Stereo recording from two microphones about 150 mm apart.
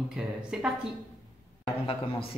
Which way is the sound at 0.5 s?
5° right (ahead or behind).